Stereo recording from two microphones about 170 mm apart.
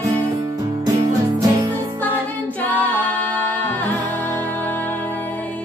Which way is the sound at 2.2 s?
10° left (ahead or behind).